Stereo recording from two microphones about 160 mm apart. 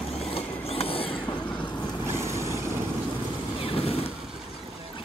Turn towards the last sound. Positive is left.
turn(degrees=35)  # may be behind; listen again after turning